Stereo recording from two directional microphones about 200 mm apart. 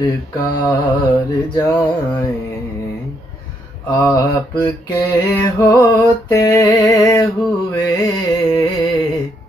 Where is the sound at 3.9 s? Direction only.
15° left (ahead or behind).